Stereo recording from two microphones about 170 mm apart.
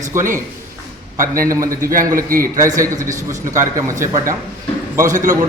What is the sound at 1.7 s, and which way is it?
Speech, 55° right (ahead or behind).